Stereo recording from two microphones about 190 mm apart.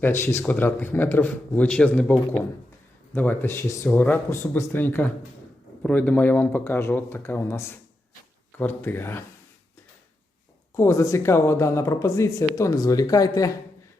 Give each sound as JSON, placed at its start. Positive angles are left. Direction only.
{"t": 0.0, "sound": "speech", "side_deg": 15}
{"t": 10.8, "sound": "speech", "side_deg": 15}